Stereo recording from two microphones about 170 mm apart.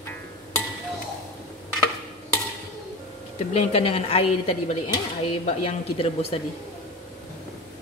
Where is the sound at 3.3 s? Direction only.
40° left (ahead or behind).